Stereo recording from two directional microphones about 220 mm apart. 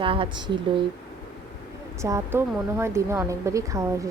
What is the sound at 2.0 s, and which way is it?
Speech, 10° right (ahead or behind).